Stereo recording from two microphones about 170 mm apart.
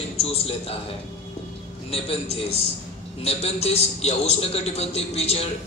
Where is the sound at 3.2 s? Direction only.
35° left (ahead or behind).